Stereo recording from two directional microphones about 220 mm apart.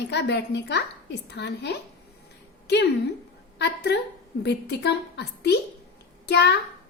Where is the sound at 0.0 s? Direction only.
50° left (ahead or behind).